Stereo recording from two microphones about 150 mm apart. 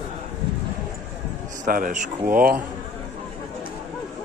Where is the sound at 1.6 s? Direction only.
60° right (ahead or behind).